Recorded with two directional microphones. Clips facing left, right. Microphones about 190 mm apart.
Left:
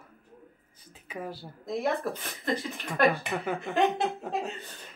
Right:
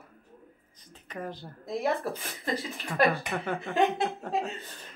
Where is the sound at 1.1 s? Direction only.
5° left (ahead or behind).